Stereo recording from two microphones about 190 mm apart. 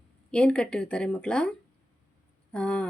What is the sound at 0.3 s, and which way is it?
A woman's voice, 5° left (ahead or behind).